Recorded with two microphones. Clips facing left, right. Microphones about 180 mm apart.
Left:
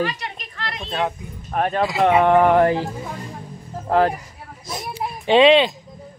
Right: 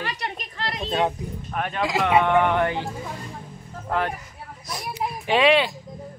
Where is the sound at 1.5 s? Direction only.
40° left (ahead or behind).